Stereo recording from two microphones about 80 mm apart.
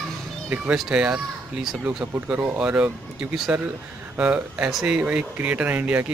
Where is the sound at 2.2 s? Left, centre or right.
Centre.